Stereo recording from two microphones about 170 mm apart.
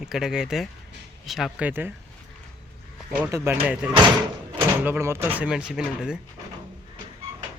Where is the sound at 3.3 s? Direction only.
15° right (ahead or behind).